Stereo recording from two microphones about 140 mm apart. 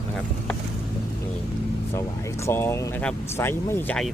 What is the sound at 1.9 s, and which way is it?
Speech, 20° left (ahead or behind).